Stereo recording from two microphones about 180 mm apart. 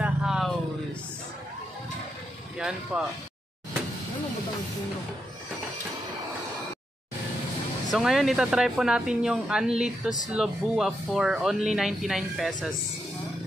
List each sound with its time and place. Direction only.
0.0 s music: 5° right (ahead or behind)
2.9 s speech: 5° right (ahead or behind)
7.9 s speech: centre (ahead or behind)